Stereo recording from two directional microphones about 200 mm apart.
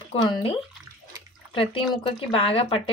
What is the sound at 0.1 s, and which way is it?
Speech, 25° left (ahead or behind).